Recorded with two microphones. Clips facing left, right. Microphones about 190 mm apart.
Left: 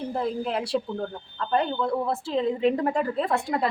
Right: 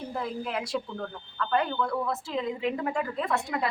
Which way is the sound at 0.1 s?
30° left (ahead or behind).